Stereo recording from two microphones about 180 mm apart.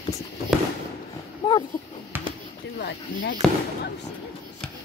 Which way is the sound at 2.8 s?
90° left.